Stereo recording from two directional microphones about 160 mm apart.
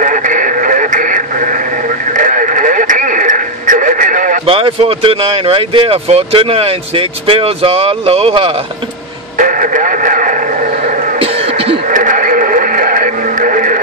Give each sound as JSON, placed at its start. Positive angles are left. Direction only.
{"t": 0.0, "sound": "radio", "side_deg": -55}
{"t": 4.5, "sound": "speech", "side_deg": -35}
{"t": 9.4, "sound": "radio", "side_deg": -55}
{"t": 11.1, "sound": "a sound", "side_deg": -35}
{"t": 11.9, "sound": "radio", "side_deg": -55}